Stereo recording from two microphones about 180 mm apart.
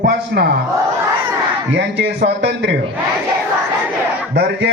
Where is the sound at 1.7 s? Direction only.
80° right.